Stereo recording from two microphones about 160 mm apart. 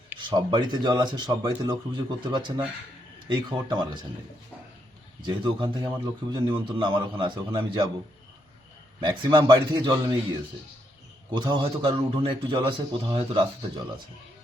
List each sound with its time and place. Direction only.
0.2 s speech: 30° right (ahead or behind)
5.2 s a man's voice: 30° right (ahead or behind)
9.0 s speech: 30° right (ahead or behind)
11.3 s a man's voice: 30° right (ahead or behind)